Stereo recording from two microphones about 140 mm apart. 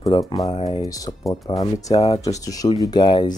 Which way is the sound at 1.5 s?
40° left (ahead or behind).